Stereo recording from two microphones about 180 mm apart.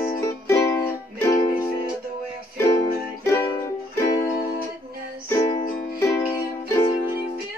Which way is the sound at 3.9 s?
15° left (ahead or behind).